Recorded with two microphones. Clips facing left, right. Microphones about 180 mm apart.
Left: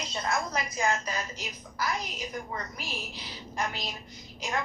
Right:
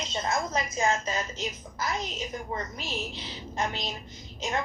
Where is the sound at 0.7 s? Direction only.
25° right (ahead or behind).